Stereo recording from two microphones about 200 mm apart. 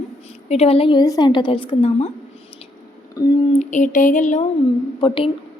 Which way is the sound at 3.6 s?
40° left (ahead or behind).